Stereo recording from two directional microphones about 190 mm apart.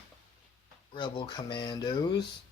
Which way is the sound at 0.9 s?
25° left (ahead or behind).